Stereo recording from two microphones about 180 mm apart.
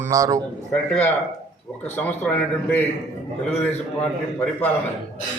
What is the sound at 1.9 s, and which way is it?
Speech, 10° left (ahead or behind).